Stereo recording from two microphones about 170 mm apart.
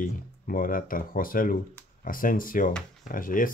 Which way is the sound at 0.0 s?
55° left (ahead or behind).